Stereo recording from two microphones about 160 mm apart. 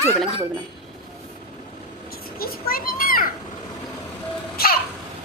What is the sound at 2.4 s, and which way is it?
Children playing, 65° left (ahead or behind).